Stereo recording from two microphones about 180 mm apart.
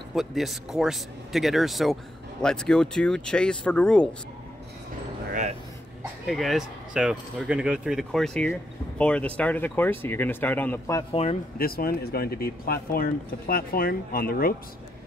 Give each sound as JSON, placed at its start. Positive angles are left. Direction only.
{"t": 0.1, "sound": "speech", "side_deg": 0}
{"t": 6.2, "sound": "speech", "side_deg": 0}
{"t": 11.5, "sound": "speech", "side_deg": 55}